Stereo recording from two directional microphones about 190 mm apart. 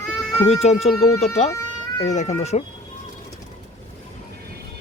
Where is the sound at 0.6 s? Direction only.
35° left (ahead or behind).